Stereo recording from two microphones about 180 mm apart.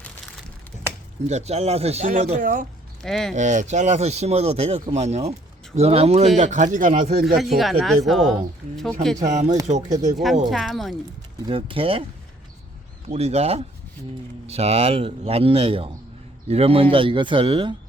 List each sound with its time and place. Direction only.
1.3 s speech: 35° right (ahead or behind)
3.0 s speech: centre (ahead or behind)
3.3 s speech: 40° right (ahead or behind)
7.3 s speech: centre (ahead or behind)
9.2 s speech: 40° right (ahead or behind)
10.5 s speech: centre (ahead or behind)
11.4 s speech: 30° right (ahead or behind)
13.1 s speech: 35° right (ahead or behind)